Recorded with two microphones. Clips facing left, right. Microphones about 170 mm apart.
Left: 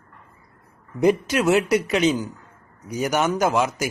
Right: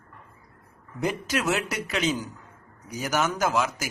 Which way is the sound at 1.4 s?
30° left (ahead or behind).